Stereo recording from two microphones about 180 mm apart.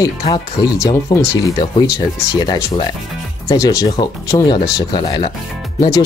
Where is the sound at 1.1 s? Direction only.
25° left (ahead or behind).